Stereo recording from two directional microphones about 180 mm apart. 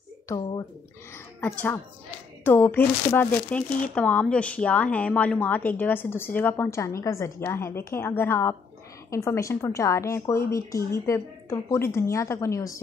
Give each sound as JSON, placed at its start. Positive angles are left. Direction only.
{"t": 0.3, "sound": "speech", "side_deg": 20}
{"t": 2.4, "sound": "speech", "side_deg": 10}